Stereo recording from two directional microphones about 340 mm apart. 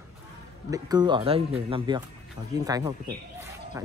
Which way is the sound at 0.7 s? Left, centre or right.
Centre.